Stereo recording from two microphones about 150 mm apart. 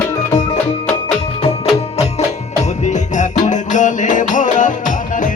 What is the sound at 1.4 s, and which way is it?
Music, 40° left (ahead or behind).